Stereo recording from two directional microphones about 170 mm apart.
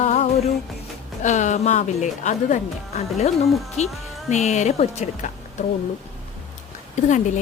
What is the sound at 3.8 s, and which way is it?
A woman's voice, 40° left (ahead or behind).